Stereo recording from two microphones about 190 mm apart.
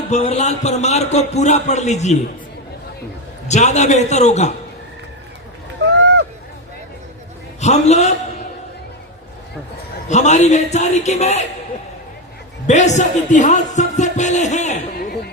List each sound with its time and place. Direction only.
0.1 s speech: 35° left (ahead or behind)
3.5 s speech: 35° left (ahead or behind)
7.6 s speech: 35° left (ahead or behind)
10.1 s speech: 35° left (ahead or behind)
12.6 s speech: 40° left (ahead or behind)